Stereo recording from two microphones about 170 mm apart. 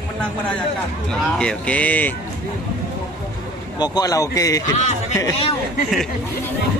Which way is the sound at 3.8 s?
20° left (ahead or behind).